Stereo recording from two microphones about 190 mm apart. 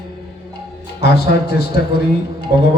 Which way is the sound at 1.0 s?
55° left (ahead or behind).